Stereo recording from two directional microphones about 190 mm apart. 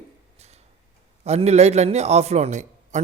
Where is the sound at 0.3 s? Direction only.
35° right (ahead or behind).